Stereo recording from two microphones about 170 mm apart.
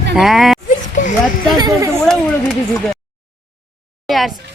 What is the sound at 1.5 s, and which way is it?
Speech, 20° right (ahead or behind).